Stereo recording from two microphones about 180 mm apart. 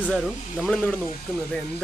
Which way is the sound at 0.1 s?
5° left (ahead or behind).